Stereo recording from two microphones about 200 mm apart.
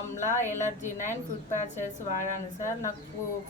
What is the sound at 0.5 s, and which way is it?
Speech, 35° left (ahead or behind).